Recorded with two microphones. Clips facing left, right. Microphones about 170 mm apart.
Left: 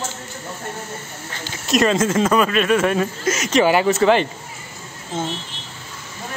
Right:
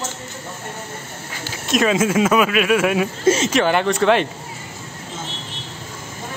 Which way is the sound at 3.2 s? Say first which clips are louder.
Right 6 dB; 30° right (ahead or behind).